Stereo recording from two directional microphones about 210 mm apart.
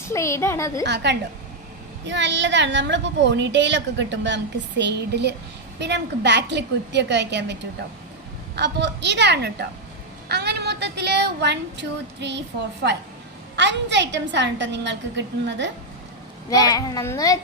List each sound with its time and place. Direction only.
0.1 s a child's voice: 15° left (ahead or behind)
0.9 s a woman's voice: 55° right (ahead or behind)
13.6 s a woman's voice: 55° right (ahead or behind)
16.5 s a child's voice: 20° left (ahead or behind)